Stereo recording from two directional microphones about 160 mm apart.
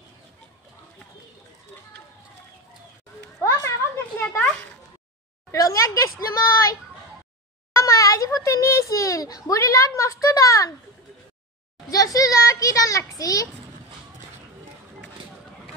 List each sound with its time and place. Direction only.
3.4 s a sound: 15° left (ahead or behind)
5.5 s a child's voice: 20° left (ahead or behind)
11.9 s a child's voice: 20° left (ahead or behind)